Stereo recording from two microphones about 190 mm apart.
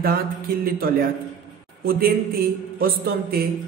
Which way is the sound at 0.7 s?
50° right (ahead or behind).